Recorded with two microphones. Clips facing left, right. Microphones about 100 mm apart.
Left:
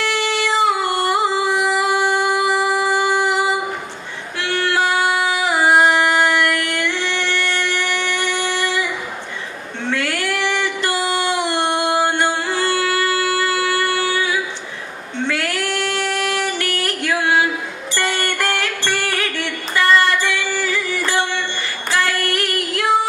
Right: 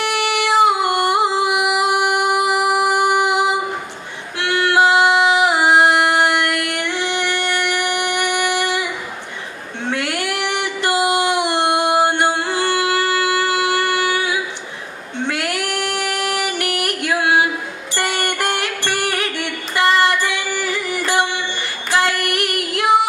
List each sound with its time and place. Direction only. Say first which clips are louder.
0.0 s music: right 1 dB; 15° right (ahead or behind)
4.4 s singing: right 4 dB; 20° right (ahead or behind)
9.8 s a sound: even; 20° right (ahead or behind)
15.1 s female singing: even; 20° right (ahead or behind)
17.9 s music: even; 20° right (ahead or behind)
21.9 s female singing: right 2 dB; 20° right (ahead or behind)